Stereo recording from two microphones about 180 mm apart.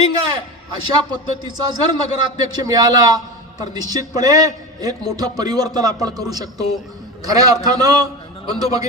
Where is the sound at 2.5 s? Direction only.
20° right (ahead or behind).